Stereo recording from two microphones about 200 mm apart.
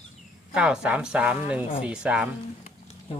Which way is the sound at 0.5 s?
5° right (ahead or behind).